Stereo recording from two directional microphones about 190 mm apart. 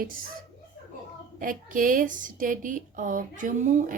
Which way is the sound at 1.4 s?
45° right (ahead or behind).